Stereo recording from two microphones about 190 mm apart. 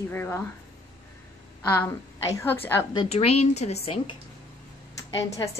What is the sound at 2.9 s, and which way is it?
A woman's voice, 30° left (ahead or behind).